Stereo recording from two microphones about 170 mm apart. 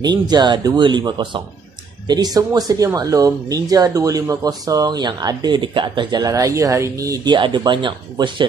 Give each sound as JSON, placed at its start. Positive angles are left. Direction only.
{"t": 0.0, "sound": "speech", "side_deg": -25}